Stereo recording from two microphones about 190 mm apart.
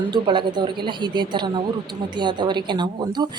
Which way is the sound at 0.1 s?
25° right (ahead or behind).